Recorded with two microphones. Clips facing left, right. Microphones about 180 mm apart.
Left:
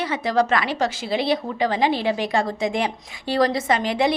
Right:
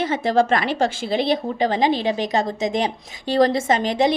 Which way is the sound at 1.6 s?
20° right (ahead or behind).